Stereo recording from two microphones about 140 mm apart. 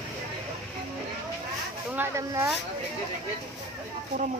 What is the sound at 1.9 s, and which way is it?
Speech, 15° right (ahead or behind).